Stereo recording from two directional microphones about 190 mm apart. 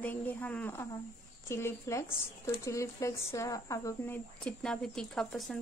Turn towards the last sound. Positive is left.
turn(degrees=0)  # may be behind; listen again after turning